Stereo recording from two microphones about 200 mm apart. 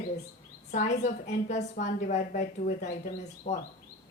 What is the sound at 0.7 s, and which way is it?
A woman's voice, 35° left (ahead or behind).